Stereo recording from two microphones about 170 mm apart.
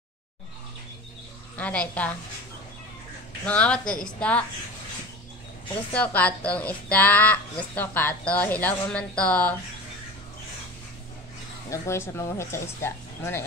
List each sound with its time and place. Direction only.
1.6 s a woman's voice: 10° left (ahead or behind)
3.4 s a woman's voice: 5° left (ahead or behind)
5.9 s a woman's voice: 10° left (ahead or behind)
11.7 s a woman's voice: 15° left (ahead or behind)